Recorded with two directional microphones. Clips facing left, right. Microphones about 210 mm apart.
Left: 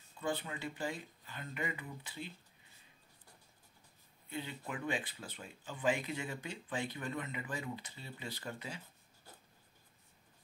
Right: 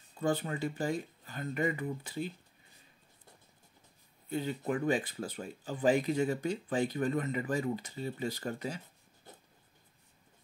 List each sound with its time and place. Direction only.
0.2 s speech: 45° right (ahead or behind)
4.3 s speech: 40° right (ahead or behind)